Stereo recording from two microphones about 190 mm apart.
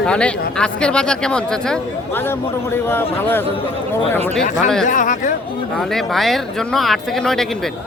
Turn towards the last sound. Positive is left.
turn(degrees=0)  # may be behind; listen again after turning